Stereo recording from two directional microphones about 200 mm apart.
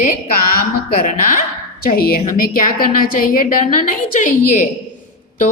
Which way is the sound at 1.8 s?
45° left (ahead or behind).